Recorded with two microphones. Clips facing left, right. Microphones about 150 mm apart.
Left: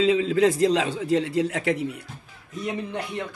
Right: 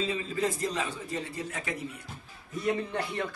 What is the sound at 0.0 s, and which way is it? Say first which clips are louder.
A man's voice: left 11 dB; 90° left.